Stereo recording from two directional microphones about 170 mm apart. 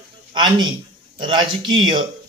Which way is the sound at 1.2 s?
30° right (ahead or behind).